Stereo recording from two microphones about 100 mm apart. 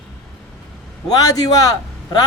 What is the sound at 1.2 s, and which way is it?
Speech, 35° left (ahead or behind).